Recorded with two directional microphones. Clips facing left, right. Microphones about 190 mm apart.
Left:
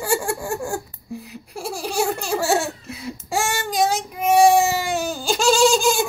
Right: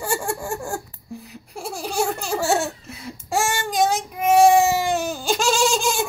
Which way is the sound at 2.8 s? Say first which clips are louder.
Left 2 dB; 5° left (ahead or behind).